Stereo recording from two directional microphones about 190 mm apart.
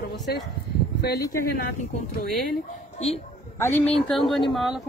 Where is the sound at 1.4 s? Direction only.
40° left (ahead or behind).